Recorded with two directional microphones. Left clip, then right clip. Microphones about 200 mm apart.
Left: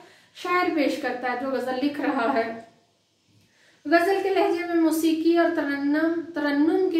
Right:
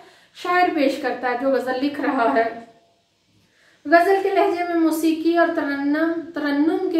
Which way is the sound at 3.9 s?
15° right (ahead or behind).